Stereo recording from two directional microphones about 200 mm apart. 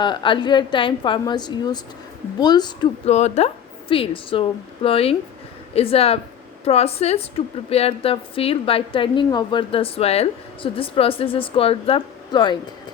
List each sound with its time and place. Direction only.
0.0 s a woman's voice: 25° left (ahead or behind)
3.1 s a woman's voice: 35° left (ahead or behind)